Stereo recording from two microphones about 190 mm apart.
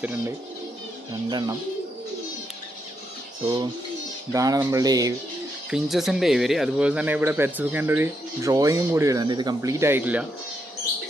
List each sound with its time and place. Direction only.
1.3 s speech: 20° right (ahead or behind)
4.3 s speech: 15° right (ahead or behind)
5.7 s speech: centre (ahead or behind)